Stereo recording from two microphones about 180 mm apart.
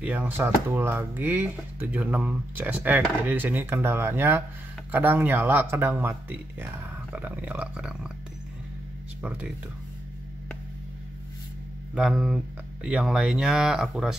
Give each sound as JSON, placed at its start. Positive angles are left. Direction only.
{"t": 0.0, "sound": "speech", "side_deg": -10}
{"t": 9.2, "sound": "speech", "side_deg": -10}
{"t": 11.9, "sound": "speech", "side_deg": 0}